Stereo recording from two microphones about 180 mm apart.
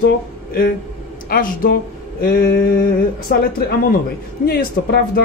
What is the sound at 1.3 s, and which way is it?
Speech, 55° left (ahead or behind).